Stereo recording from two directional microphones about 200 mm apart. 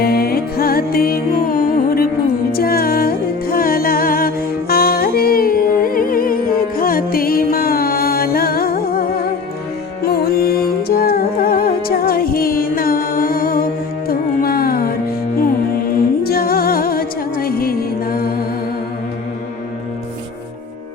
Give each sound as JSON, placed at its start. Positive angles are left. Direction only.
{"t": 0.0, "sound": "music", "side_deg": 50}
{"t": 16.2, "sound": "music", "side_deg": 50}